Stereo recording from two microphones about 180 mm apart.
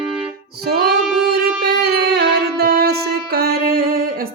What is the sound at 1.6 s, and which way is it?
Music, 60° right (ahead or behind).